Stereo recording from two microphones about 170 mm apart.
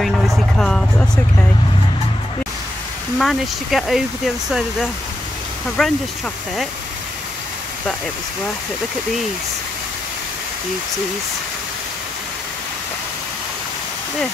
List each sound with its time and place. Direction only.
0.0 s speech: 5° left (ahead or behind)
3.2 s speech: centre (ahead or behind)